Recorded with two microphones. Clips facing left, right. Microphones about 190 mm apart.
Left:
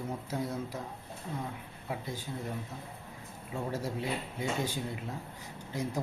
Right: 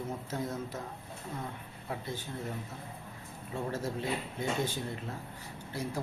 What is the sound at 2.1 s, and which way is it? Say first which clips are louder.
Speech: even; 10° left (ahead or behind).